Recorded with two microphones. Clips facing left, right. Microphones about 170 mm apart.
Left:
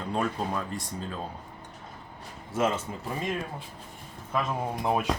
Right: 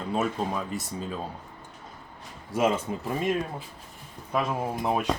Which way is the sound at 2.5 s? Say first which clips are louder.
Right 2 dB; 10° right (ahead or behind).